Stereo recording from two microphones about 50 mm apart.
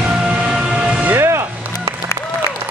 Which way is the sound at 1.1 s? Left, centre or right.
Right.